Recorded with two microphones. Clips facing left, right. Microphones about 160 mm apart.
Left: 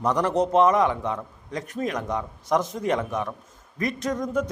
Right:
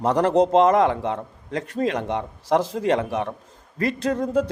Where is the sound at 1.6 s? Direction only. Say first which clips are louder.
Right 4 dB; 30° right (ahead or behind).